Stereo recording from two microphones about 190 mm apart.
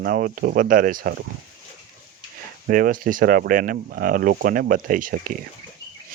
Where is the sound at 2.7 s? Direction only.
50° right (ahead or behind).